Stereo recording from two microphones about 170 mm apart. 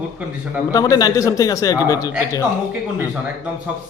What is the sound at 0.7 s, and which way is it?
A man's voice, 20° left (ahead or behind).